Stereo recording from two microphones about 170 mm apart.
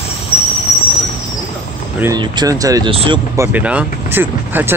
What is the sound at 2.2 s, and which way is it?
Speech, 20° right (ahead or behind).